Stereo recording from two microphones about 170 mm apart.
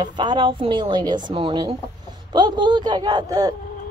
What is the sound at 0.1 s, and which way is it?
Speech, 25° right (ahead or behind).